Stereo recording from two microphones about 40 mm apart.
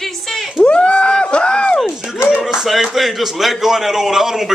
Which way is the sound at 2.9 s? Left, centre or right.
Centre.